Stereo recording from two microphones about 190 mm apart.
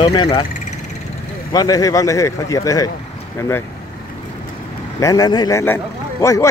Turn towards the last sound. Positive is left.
turn(degrees=15)  # may be behind; listen again after turning